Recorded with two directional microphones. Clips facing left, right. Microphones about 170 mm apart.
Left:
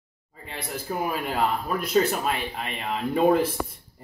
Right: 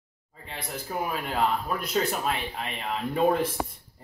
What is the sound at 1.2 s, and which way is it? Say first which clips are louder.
Speech: left 1 dB; 5° left (ahead or behind).